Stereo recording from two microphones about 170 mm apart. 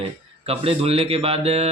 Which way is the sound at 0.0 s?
35° right (ahead or behind).